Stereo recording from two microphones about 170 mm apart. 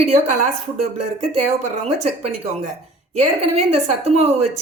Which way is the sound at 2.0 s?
40° right (ahead or behind).